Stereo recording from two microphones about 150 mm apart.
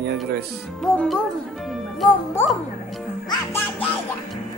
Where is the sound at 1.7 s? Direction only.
Centre (ahead or behind).